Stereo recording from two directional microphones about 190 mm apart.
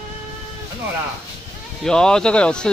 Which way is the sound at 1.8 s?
5° left (ahead or behind).